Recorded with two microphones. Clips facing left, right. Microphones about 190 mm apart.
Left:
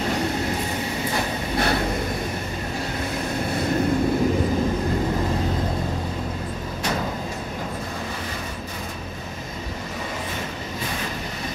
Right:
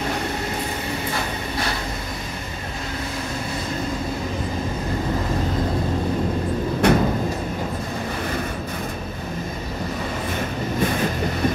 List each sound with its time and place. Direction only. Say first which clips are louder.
6.8 s vehicle: right 10 dB; 60° right (ahead or behind)